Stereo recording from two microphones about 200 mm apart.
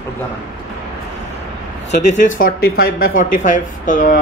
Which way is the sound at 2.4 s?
50° left (ahead or behind).